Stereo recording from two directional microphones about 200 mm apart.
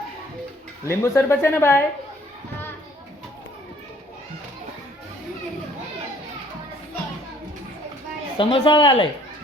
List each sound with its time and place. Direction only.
0.9 s speech: 15° left (ahead or behind)
8.4 s a man's voice: 25° left (ahead or behind)